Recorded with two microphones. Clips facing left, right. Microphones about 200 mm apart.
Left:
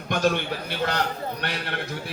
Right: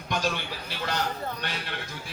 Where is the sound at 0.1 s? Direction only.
55° left (ahead or behind).